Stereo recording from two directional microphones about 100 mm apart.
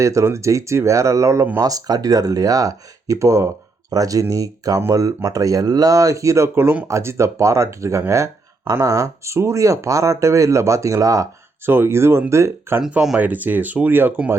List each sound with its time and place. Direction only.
0.0 s speech: 30° right (ahead or behind)
12.8 s speech: 5° right (ahead or behind)